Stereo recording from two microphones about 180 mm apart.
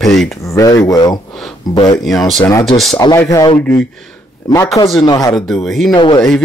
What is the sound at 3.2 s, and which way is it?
Speech, 15° left (ahead or behind).